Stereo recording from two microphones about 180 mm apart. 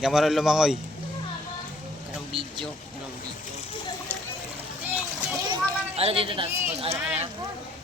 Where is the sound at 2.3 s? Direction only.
30° right (ahead or behind).